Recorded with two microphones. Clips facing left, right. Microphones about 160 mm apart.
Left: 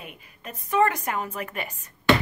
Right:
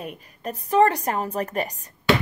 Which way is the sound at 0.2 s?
40° right (ahead or behind).